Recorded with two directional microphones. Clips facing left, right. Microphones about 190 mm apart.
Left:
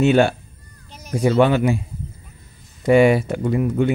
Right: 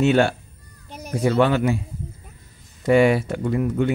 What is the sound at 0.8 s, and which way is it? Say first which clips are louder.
Cat: right 6 dB; 55° right (ahead or behind).